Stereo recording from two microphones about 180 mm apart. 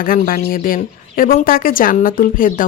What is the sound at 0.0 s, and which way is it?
A woman's voice, 50° left (ahead or behind).